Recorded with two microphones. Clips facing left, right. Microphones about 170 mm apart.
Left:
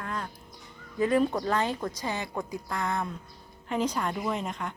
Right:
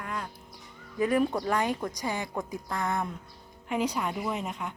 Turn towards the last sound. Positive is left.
turn(degrees=-5)  # may be behind; listen again after turning